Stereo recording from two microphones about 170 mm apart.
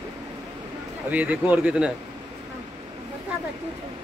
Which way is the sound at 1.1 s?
10° right (ahead or behind).